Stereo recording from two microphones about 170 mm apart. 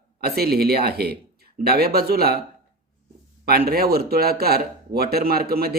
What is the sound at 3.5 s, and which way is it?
Speech, 65° right (ahead or behind).